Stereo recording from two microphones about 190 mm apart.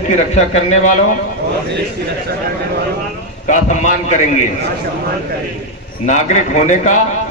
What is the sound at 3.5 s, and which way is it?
Speech, 40° left (ahead or behind).